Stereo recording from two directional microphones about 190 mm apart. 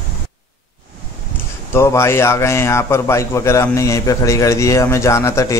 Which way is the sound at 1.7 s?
15° left (ahead or behind).